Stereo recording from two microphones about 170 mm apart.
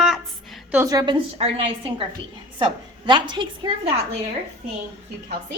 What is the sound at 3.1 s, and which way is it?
Speech, 25° right (ahead or behind).